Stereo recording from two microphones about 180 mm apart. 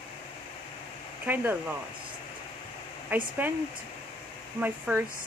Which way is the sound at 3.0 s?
10° right (ahead or behind).